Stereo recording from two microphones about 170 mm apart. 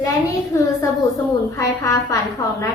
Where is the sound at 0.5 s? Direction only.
15° left (ahead or behind).